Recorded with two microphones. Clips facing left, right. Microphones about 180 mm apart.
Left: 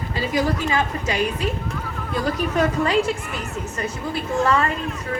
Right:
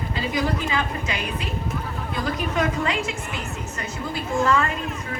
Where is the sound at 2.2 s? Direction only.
35° left (ahead or behind).